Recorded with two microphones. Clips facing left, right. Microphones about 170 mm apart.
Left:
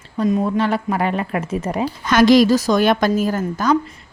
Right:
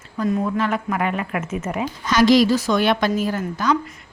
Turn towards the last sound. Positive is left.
turn(degrees=45)  # may be behind; listen again after turning